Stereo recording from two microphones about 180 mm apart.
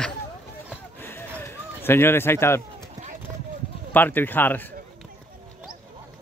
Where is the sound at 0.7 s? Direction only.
10° left (ahead or behind).